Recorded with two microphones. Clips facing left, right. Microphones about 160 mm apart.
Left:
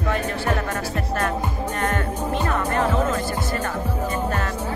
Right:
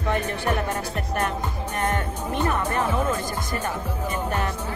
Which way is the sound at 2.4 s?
15° right (ahead or behind).